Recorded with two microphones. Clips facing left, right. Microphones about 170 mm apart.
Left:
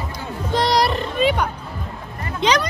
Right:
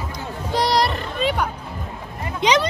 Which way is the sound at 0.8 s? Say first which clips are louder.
Left 3 dB; 5° left (ahead or behind).